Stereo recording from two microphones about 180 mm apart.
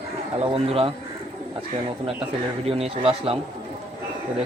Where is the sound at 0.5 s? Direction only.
30° right (ahead or behind).